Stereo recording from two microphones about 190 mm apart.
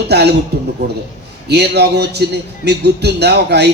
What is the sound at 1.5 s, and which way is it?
A man's voice, 60° right (ahead or behind).